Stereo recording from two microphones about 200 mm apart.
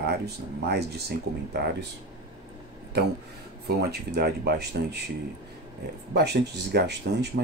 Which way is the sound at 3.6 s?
55° right (ahead or behind).